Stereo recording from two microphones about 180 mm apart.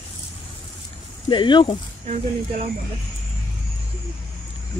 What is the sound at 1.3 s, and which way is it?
Speech, 25° left (ahead or behind).